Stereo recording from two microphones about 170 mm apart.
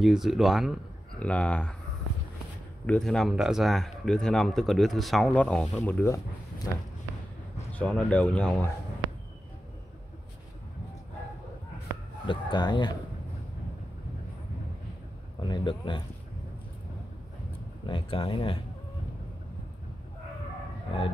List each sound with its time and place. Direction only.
0.0 s speech: centre (ahead or behind)
2.9 s speech: 5° left (ahead or behind)
7.7 s speech: 10° left (ahead or behind)
12.3 s speech: 25° left (ahead or behind)
15.4 s speech: 25° left (ahead or behind)
17.8 s speech: 30° left (ahead or behind)